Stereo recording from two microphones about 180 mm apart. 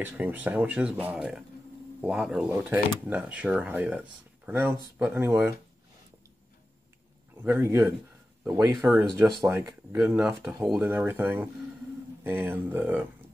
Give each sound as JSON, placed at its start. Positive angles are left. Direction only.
{"t": 0.0, "sound": "speech", "side_deg": -10}
{"t": 7.4, "sound": "speech", "side_deg": -15}